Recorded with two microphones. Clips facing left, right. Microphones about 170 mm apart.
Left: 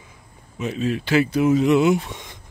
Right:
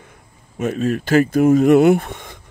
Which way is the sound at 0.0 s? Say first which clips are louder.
Right 2 dB; 55° right (ahead or behind).